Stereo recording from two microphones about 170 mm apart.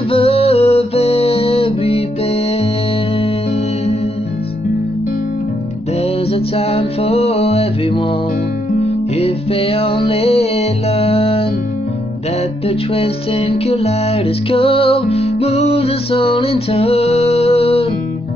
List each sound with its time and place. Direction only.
0.1 s music: 35° left (ahead or behind)
6.3 s music: 35° left (ahead or behind)
12.6 s music: 35° left (ahead or behind)